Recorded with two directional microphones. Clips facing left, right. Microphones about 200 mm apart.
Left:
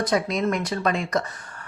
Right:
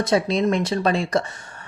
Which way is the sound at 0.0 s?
30° right (ahead or behind).